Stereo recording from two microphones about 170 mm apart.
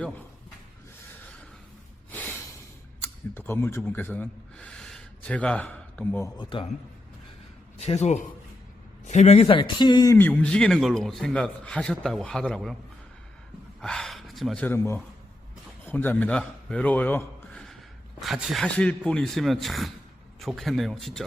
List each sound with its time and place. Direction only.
2.0 s snort: 10° left (ahead or behind)
3.0 s speech: 15° left (ahead or behind)
6.3 s speech: 30° left (ahead or behind)
7.8 s a man's voice: 40° left (ahead or behind); by 10.2 s 25° left (ahead or behind)
10.2 s a man's voice: 10° left (ahead or behind)
13.8 s a man's voice: 5° left (ahead or behind)